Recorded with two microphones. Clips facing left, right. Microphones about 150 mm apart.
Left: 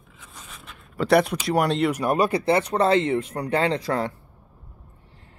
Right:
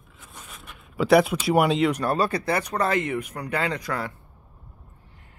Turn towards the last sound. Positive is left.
turn(degrees=30)  # may be behind; listen again after turning